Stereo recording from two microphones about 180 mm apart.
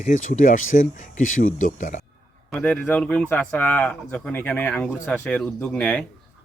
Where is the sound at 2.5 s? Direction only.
5° left (ahead or behind).